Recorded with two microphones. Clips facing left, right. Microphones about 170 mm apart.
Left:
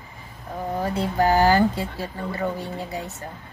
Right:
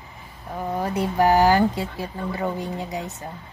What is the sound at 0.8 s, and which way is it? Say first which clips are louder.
Speech: right 1 dB; 15° right (ahead or behind).